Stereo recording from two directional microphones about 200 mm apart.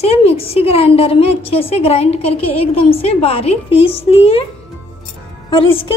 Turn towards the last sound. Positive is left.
turn(degrees=25)  # may be behind; listen again after turning